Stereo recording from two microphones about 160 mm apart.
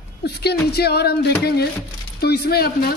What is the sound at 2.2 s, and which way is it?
Speech, 75° left (ahead or behind).